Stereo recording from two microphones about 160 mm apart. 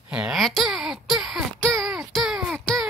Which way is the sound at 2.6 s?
Centre (ahead or behind).